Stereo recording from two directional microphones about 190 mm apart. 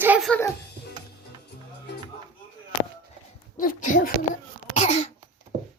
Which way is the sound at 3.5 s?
45° left (ahead or behind).